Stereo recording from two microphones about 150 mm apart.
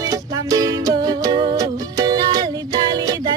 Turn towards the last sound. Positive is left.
turn(degrees=-25)  # may be behind; listen again after turning